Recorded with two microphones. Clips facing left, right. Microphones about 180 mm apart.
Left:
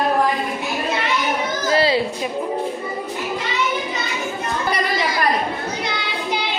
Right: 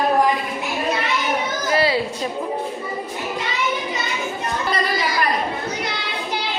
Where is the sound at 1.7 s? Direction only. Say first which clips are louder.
Left 2 dB; 30° left (ahead or behind).